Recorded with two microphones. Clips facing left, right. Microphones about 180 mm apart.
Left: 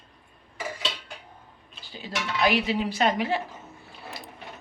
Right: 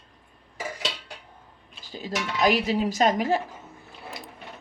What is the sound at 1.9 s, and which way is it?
Speech, 40° right (ahead or behind).